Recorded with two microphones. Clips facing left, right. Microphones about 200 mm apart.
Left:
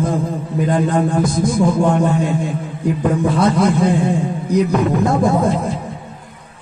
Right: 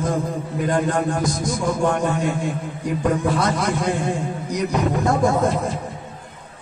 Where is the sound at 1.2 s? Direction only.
55° left (ahead or behind).